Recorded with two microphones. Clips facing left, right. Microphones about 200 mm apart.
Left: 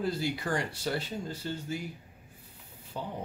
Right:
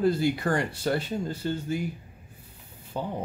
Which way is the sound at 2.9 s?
55° right (ahead or behind).